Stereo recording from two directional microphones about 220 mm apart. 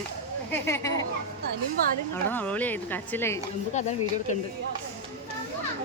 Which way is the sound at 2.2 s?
5° left (ahead or behind).